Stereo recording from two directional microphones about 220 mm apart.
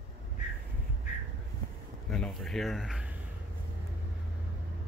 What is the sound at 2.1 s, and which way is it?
Speech, centre (ahead or behind).